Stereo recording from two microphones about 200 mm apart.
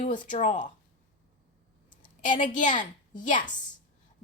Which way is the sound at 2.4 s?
40° left (ahead or behind).